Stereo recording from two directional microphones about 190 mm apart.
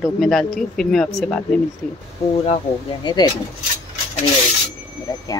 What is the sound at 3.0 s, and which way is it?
Speech, 25° left (ahead or behind).